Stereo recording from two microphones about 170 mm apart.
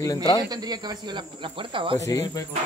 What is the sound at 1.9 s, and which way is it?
Speech, 20° left (ahead or behind).